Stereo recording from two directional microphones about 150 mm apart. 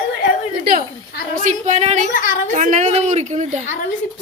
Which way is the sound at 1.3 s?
55° right (ahead or behind).